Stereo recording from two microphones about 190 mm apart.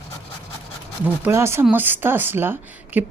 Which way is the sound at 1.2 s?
15° right (ahead or behind).